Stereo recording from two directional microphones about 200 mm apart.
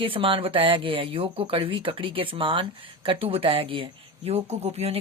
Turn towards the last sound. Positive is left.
turn(degrees=-30)  # may be behind; listen again after turning